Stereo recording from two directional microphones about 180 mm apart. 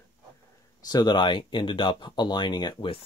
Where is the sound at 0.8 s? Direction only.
20° left (ahead or behind).